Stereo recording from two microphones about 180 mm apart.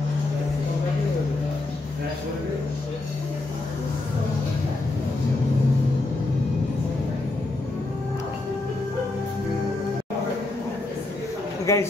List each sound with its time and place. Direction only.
11.7 s a man's voice: 15° left (ahead or behind)